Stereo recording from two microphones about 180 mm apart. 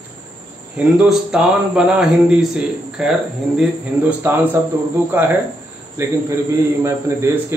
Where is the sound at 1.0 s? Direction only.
5° right (ahead or behind).